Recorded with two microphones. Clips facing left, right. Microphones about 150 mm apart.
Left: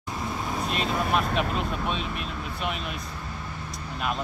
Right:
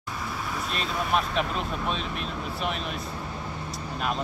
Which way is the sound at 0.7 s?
5° left (ahead or behind).